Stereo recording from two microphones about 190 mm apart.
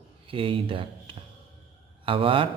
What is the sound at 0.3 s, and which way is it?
A man's voice, 30° right (ahead or behind).